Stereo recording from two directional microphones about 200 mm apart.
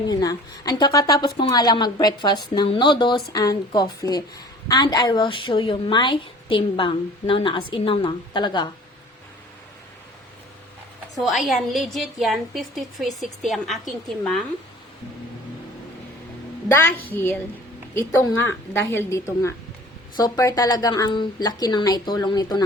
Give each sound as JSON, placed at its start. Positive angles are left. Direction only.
{"t": 0.1, "sound": "a woman's voice", "side_deg": 20}
{"t": 11.2, "sound": "a woman's voice", "side_deg": 0}
{"t": 17.1, "sound": "a woman's voice", "side_deg": 10}